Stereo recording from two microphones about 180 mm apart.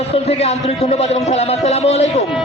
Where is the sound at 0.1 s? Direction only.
35° left (ahead or behind).